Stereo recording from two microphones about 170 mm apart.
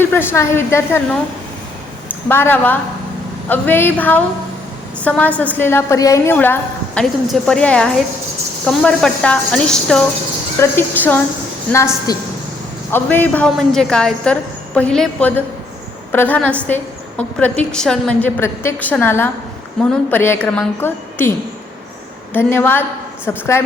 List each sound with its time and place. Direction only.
0.0 s a woman's voice: 10° left (ahead or behind)
12.1 s a woman's voice: 20° left (ahead or behind)
12.9 s a woman's voice: 10° left (ahead or behind)